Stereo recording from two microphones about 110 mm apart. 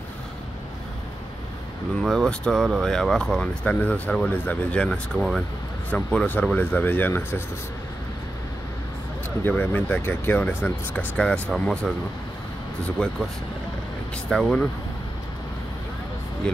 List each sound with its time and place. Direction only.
2.0 s speech: 5° left (ahead or behind); by 7.4 s 20° left (ahead or behind)
9.4 s speech: 20° left (ahead or behind)
13.0 s speech: 10° left (ahead or behind)